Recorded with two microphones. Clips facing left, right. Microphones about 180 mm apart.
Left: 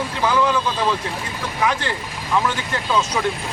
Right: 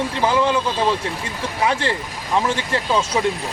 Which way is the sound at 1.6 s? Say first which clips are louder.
Right 2 dB; 30° right (ahead or behind).